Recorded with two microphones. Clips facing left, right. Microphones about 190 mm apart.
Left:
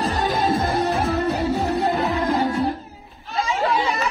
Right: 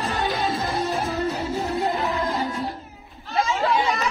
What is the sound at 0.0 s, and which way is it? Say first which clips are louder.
Music: left 3 dB; 40° left (ahead or behind).